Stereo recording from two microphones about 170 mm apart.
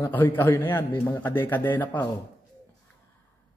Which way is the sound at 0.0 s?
10° left (ahead or behind).